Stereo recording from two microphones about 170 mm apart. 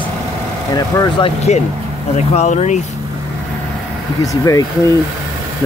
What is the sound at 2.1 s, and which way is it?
Speech, 40° left (ahead or behind).